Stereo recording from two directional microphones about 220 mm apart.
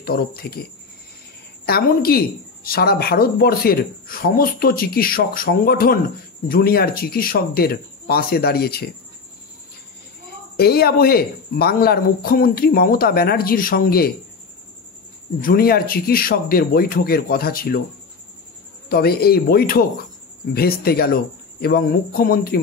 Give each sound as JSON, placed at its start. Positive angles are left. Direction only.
{"t": 0.0, "sound": "speech", "side_deg": 45}
{"t": 1.7, "sound": "speech", "side_deg": 45}
{"t": 10.6, "sound": "speech", "side_deg": 45}
{"t": 15.4, "sound": "speech", "side_deg": 45}
{"t": 18.9, "sound": "speech", "side_deg": 45}